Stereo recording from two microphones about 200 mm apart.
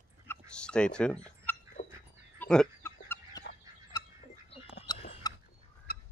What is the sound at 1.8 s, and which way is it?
Dog, 40° left (ahead or behind).